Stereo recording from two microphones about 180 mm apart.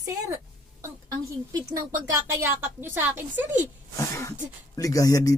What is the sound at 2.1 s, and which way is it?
A woman's voice, 15° right (ahead or behind).